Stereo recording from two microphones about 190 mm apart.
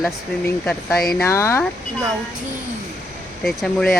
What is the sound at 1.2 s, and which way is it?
Speech, 15° left (ahead or behind).